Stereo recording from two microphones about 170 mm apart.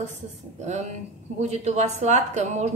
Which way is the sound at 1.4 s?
40° right (ahead or behind).